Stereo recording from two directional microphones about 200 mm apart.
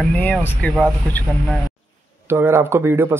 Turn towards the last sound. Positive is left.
turn(degrees=-10)  # may be behind; listen again after turning